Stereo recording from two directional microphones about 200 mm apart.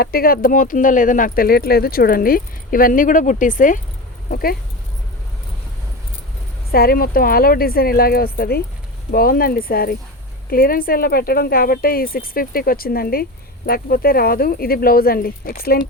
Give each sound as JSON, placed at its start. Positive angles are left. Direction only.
{"t": 0.0, "sound": "speech", "side_deg": 50}
{"t": 6.7, "sound": "speech", "side_deg": 50}